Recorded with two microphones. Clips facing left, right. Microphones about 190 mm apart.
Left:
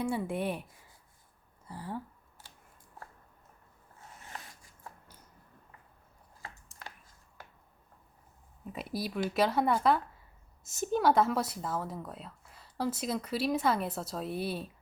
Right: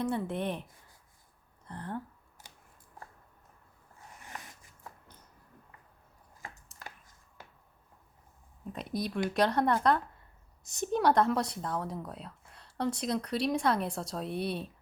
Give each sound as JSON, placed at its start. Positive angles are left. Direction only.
{"t": 0.0, "sound": "speech", "side_deg": 10}
{"t": 1.6, "sound": "speech", "side_deg": 5}
{"t": 6.4, "sound": "a sound", "side_deg": -20}
{"t": 8.7, "sound": "speech", "side_deg": 5}